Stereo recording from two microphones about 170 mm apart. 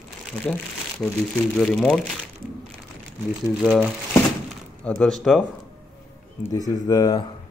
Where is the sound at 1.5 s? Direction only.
5° left (ahead or behind).